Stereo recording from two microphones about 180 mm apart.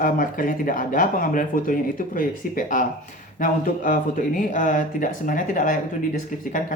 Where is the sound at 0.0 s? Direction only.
50° left (ahead or behind).